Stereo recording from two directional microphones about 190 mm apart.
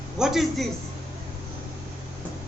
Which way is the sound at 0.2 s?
Centre (ahead or behind).